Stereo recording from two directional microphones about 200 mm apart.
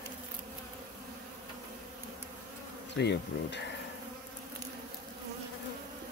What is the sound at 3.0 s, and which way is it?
Speech, 60° left (ahead or behind).